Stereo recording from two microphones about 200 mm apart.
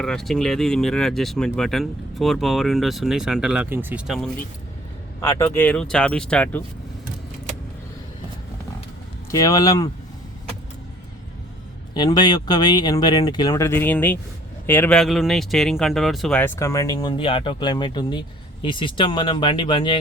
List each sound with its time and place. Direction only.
0.0 s speech: centre (ahead or behind)
5.2 s speech: 10° left (ahead or behind)
9.3 s speech: 15° left (ahead or behind)
11.9 s speech: 20° left (ahead or behind)